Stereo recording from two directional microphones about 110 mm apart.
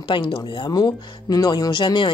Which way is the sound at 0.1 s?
45° left (ahead or behind).